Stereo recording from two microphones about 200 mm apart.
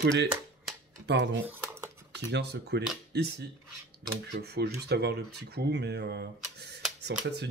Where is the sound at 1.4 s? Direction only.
10° right (ahead or behind).